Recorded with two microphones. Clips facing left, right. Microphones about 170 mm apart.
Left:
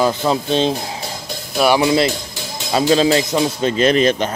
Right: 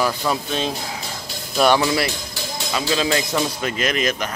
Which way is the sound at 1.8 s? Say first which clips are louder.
Left 6 dB; 20° left (ahead or behind).